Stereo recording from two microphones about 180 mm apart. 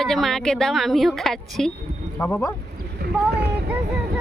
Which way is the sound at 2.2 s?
15° left (ahead or behind).